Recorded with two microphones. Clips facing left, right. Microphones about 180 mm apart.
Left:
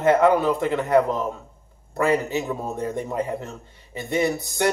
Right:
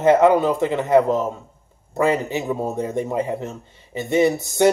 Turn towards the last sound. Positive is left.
turn(degrees=-20)  # may be behind; listen again after turning